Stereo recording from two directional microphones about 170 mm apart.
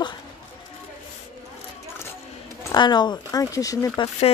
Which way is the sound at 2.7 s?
25° left (ahead or behind).